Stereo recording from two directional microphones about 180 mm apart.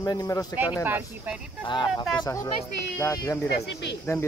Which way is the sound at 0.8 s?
10° right (ahead or behind).